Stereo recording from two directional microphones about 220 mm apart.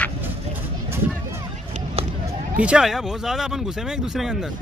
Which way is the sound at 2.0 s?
25° right (ahead or behind).